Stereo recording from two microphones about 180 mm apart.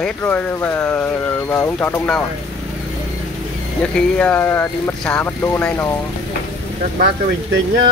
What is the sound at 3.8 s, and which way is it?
Speech, 5° left (ahead or behind).